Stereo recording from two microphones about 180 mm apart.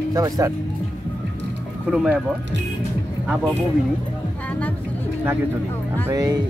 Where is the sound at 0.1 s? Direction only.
20° right (ahead or behind).